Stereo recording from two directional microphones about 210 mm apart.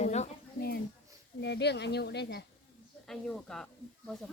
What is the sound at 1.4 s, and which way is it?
Speech, 55° left (ahead or behind).